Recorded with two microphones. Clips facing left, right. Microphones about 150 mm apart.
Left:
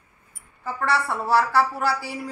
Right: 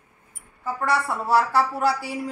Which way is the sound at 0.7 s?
20° right (ahead or behind).